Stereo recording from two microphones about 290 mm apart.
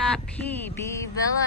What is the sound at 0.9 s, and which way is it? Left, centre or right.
Speech, centre.